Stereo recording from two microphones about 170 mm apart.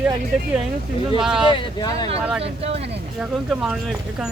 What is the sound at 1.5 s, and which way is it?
Speech, 25° left (ahead or behind).